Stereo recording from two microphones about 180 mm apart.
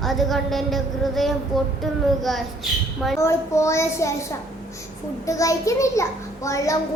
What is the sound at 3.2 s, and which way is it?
Speech, 15° left (ahead or behind).